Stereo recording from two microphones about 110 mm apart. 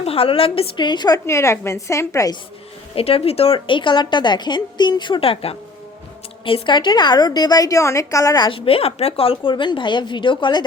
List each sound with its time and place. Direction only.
0.0 s a woman's voice: 60° left (ahead or behind); by 2.3 s 25° left (ahead or behind)
2.9 s speech: 60° left (ahead or behind)
6.4 s a woman's voice: 50° left (ahead or behind); by 8.4 s 30° left (ahead or behind)
8.4 s speech: 55° left (ahead or behind)